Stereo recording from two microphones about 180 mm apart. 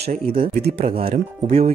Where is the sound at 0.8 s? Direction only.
30° right (ahead or behind).